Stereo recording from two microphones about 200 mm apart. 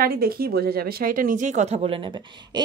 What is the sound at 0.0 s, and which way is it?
Speech, 50° right (ahead or behind).